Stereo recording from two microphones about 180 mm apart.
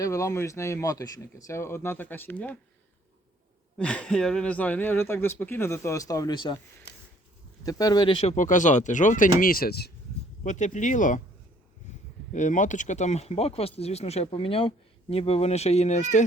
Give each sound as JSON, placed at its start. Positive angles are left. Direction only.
{"t": 0.0, "sound": "speech", "side_deg": 15}
{"t": 3.8, "sound": "speech", "side_deg": 5}
{"t": 7.6, "sound": "speech", "side_deg": 20}
{"t": 10.4, "sound": "speech", "side_deg": 40}
{"t": 12.3, "sound": "speech", "side_deg": 45}